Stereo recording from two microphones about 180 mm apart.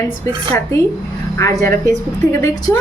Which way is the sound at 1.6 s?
15° left (ahead or behind).